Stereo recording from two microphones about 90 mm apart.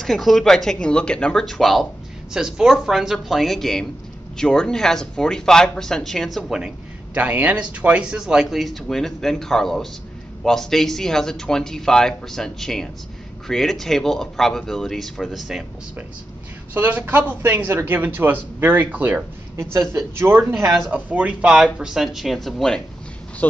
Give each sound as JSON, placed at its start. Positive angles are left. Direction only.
{"t": 0.0, "sound": "speech", "side_deg": 0}
{"t": 7.2, "sound": "speech", "side_deg": -15}
{"t": 16.7, "sound": "speech", "side_deg": -20}
{"t": 23.4, "sound": "speech", "side_deg": 20}